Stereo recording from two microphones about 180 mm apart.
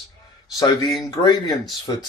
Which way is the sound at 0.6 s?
20° left (ahead or behind).